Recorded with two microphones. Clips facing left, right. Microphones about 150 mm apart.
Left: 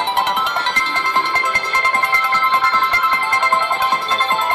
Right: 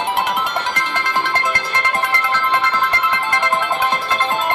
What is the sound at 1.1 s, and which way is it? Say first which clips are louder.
Music: even; 20° left (ahead or behind).